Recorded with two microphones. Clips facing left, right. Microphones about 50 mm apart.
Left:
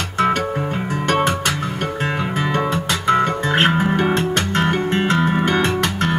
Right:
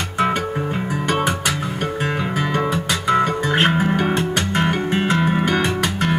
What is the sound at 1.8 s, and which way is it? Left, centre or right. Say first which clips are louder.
Music: even; centre.